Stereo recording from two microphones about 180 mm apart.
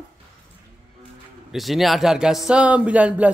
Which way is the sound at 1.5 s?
Centre (ahead or behind).